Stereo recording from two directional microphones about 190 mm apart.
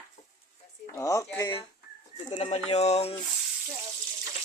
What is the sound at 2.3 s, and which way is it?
Speech, 35° left (ahead or behind).